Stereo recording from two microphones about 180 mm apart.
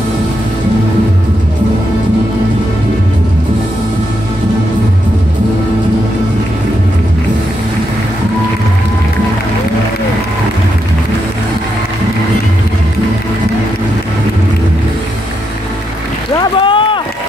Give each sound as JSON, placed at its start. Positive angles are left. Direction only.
{"t": 16.3, "sound": "boat", "side_deg": 25}